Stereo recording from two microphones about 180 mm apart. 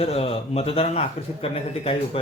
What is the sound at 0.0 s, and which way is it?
A man's voice, 35° left (ahead or behind).